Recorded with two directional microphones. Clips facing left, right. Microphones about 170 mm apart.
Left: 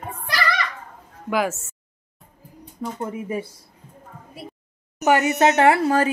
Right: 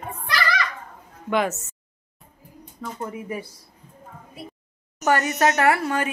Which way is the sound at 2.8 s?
20° left (ahead or behind).